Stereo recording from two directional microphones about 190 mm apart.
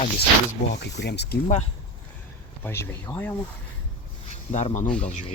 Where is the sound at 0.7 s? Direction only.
65° left (ahead or behind).